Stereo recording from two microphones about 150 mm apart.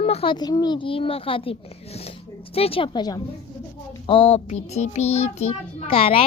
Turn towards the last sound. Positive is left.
turn(degrees=40)  # may be behind; listen again after turning